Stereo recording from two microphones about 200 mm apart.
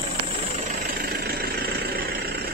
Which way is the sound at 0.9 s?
50° right (ahead or behind).